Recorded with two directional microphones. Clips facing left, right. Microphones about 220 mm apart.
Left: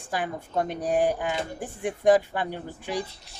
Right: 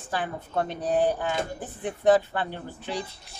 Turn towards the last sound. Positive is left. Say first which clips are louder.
# left 2 dB
turn(degrees=10)  # may be behind; listen again after turning